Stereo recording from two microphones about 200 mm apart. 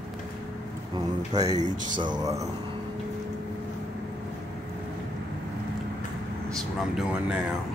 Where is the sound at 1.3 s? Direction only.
20° right (ahead or behind).